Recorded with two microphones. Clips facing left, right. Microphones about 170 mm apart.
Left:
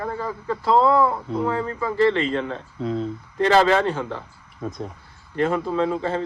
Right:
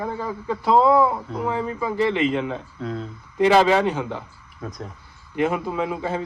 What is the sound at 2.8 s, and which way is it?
Speech, centre (ahead or behind).